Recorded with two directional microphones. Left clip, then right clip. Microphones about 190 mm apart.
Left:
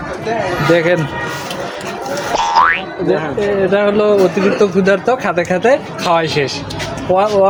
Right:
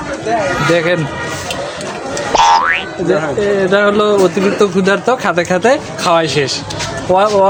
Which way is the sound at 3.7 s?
20° right (ahead or behind).